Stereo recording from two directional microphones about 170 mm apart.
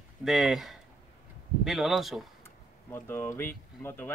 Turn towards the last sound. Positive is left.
turn(degrees=10)  # may be behind; listen again after turning